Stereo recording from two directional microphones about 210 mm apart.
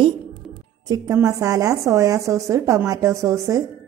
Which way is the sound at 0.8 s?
15° right (ahead or behind).